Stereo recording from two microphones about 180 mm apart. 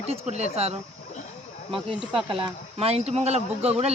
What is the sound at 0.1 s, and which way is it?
Speech, 35° right (ahead or behind).